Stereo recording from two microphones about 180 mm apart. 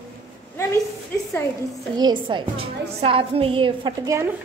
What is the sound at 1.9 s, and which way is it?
A woman's voice, 25° right (ahead or behind).